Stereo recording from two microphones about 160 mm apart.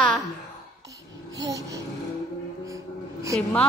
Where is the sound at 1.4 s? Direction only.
20° right (ahead or behind).